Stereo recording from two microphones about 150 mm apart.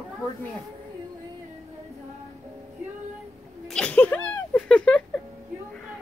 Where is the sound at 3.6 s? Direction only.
5° left (ahead or behind).